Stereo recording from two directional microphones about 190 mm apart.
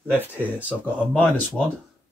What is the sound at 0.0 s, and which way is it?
Speech, 10° right (ahead or behind).